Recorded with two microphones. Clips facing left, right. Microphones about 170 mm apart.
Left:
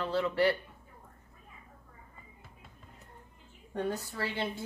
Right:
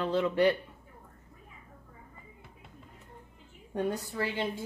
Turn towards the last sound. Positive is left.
turn(degrees=-15)  # may be behind; listen again after turning